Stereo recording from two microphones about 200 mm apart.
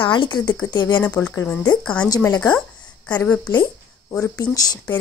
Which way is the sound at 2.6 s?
5° left (ahead or behind).